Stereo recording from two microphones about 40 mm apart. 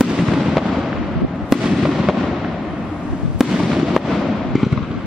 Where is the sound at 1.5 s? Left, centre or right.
Centre.